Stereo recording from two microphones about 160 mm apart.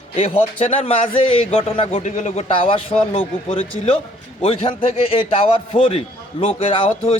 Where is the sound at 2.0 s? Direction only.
45° left (ahead or behind).